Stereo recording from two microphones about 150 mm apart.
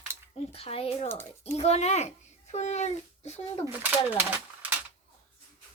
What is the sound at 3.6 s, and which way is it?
Speech, 10° right (ahead or behind).